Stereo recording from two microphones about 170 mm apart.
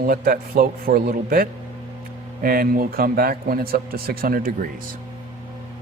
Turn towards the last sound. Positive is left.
turn(degrees=-55)  # may be behind; listen again after turning